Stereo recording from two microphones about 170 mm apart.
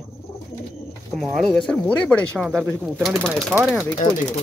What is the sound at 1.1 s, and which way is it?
Speech, 5° left (ahead or behind).